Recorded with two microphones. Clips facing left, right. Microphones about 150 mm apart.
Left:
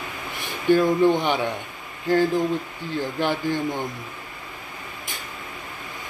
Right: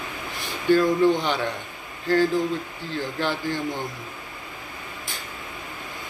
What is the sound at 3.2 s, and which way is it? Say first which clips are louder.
Speech: left 3 dB; 15° left (ahead or behind).